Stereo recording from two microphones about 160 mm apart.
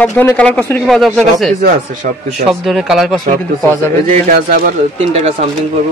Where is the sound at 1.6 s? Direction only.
60° right (ahead or behind).